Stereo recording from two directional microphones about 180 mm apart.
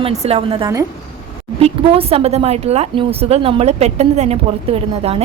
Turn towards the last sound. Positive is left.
turn(degrees=-35)  # may be behind; listen again after turning